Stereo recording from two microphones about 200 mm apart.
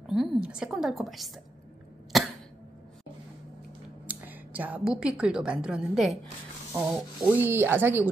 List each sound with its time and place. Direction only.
0.0 s a woman's voice: centre (ahead or behind)
2.1 s a sound: centre (ahead or behind)
4.1 s a woman's voice: 10° right (ahead or behind)